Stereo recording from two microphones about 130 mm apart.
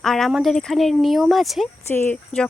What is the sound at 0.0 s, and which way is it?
Speech, 5° left (ahead or behind).